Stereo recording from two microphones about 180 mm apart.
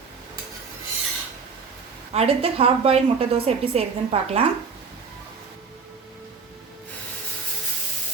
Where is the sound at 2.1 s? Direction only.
35° right (ahead or behind).